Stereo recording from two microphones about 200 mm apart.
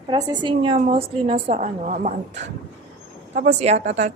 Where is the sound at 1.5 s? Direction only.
40° right (ahead or behind).